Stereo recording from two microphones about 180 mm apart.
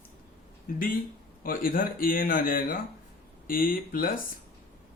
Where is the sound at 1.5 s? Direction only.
50° left (ahead or behind).